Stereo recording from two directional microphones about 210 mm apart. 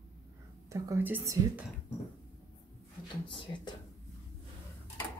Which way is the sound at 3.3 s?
25° left (ahead or behind).